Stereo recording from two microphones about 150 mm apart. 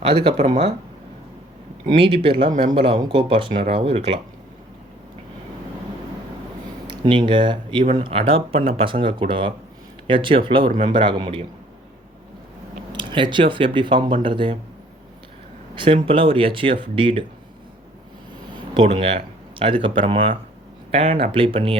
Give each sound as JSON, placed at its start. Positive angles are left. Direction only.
{"t": 0.0, "sound": "speech", "side_deg": -35}
{"t": 2.0, "sound": "speech", "side_deg": -35}
{"t": 6.8, "sound": "speech", "side_deg": -30}
{"t": 12.9, "sound": "speech", "side_deg": -30}
{"t": 15.7, "sound": "speech", "side_deg": -35}
{"t": 18.5, "sound": "a sound", "side_deg": -40}
{"t": 20.0, "sound": "speech", "side_deg": -35}